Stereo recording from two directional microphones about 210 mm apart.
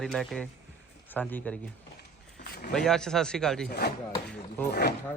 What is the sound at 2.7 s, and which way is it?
Speech, centre (ahead or behind).